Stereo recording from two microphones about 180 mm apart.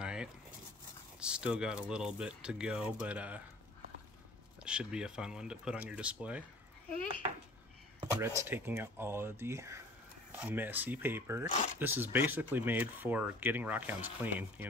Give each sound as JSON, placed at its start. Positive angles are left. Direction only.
{"t": 0.0, "sound": "a sound", "side_deg": -5}
{"t": 1.2, "sound": "speech", "side_deg": -5}
{"t": 4.6, "sound": "speech", "side_deg": -5}
{"t": 8.2, "sound": "speech", "side_deg": -15}